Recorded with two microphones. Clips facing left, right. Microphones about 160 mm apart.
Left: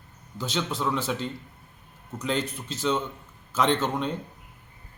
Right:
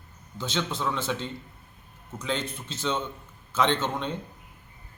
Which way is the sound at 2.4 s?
40° left (ahead or behind).